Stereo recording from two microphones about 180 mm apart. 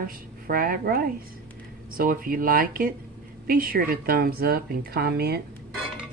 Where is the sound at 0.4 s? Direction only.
50° right (ahead or behind).